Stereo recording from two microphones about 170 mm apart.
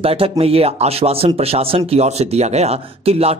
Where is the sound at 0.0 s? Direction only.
35° right (ahead or behind).